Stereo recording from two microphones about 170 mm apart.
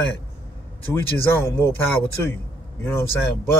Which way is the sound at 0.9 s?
15° left (ahead or behind).